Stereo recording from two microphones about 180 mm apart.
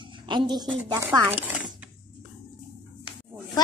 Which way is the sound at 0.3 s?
25° right (ahead or behind).